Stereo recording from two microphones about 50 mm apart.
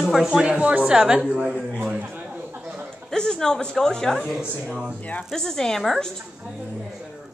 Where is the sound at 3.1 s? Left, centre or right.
Centre.